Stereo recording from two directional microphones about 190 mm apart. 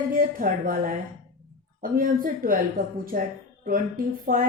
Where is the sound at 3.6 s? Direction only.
45° right (ahead or behind).